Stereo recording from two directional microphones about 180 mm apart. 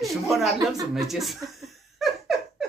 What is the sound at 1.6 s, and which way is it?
Laughter, centre (ahead or behind).